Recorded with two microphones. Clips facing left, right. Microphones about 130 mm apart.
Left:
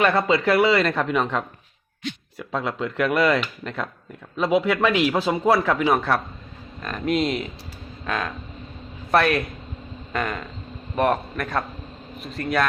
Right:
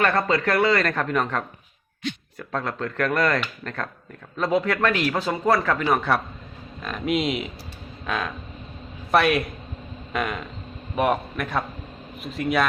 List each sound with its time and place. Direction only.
0.0 s speech: 5° left (ahead or behind)
1.1 s speech: 15° left (ahead or behind)
4.9 s speech: 15° left (ahead or behind)
5.5 s speech: 5° left (ahead or behind)
8.0 s a sound: centre (ahead or behind)
9.1 s speech: centre (ahead or behind)
10.1 s a sound: centre (ahead or behind)
10.9 s speech: centre (ahead or behind)